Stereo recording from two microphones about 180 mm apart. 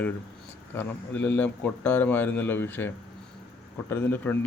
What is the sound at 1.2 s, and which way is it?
Speech, 10° left (ahead or behind).